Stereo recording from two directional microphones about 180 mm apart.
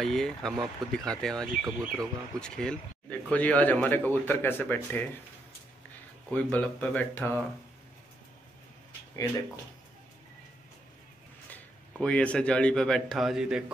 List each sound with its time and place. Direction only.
0.0 s speech: centre (ahead or behind)
6.3 s speech: 5° left (ahead or behind)
11.5 s a man's voice: 5° left (ahead or behind)